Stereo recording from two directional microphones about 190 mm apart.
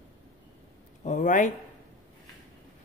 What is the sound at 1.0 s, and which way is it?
Speech, 40° left (ahead or behind).